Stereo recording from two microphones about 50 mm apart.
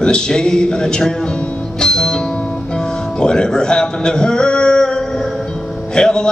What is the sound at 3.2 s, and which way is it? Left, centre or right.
Speech, centre.